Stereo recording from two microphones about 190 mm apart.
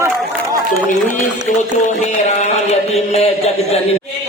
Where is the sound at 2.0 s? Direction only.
35° left (ahead or behind).